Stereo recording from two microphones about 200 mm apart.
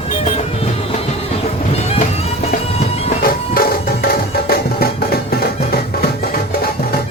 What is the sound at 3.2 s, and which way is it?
Music, 45° left (ahead or behind).